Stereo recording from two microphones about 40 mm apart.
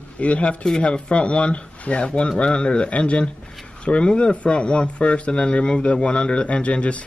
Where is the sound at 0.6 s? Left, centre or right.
Left.